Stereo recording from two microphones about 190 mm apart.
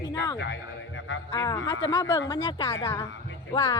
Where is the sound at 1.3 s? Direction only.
20° left (ahead or behind).